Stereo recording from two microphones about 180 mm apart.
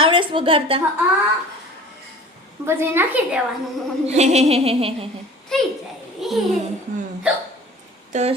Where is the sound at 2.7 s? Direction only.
10° right (ahead or behind).